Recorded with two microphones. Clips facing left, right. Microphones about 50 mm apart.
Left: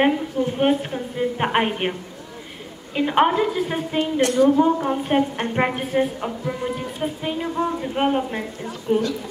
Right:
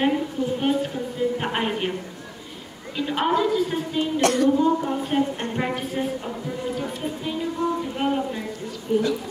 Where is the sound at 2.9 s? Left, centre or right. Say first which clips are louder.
Left 4 dB; left.